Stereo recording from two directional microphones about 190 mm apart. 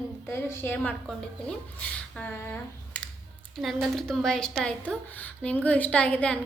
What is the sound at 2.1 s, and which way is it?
A woman's voice, 10° left (ahead or behind).